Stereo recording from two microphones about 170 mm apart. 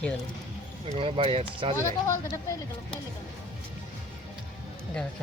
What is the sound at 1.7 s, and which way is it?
Speech, 20° left (ahead or behind).